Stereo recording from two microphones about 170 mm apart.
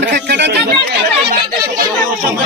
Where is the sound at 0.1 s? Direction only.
85° right.